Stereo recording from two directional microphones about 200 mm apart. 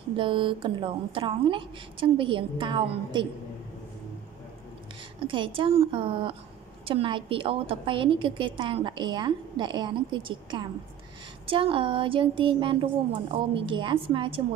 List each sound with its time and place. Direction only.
0.2 s a woman's voice: 25° right (ahead or behind)
5.2 s a woman's voice: 25° right (ahead or behind)